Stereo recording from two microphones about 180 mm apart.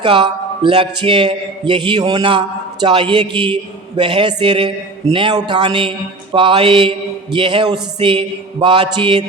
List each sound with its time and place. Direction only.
0.0 s a man's voice: 25° right (ahead or behind)